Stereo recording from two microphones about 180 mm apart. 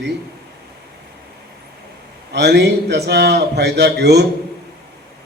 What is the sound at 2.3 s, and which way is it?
Speech, 70° right (ahead or behind).